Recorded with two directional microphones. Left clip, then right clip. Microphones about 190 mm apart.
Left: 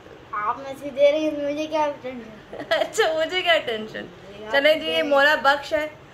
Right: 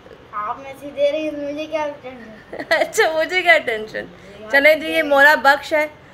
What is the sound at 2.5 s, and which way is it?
Speech, 25° right (ahead or behind).